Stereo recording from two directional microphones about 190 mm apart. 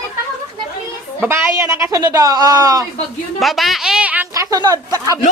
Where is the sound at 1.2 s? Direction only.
10° right (ahead or behind).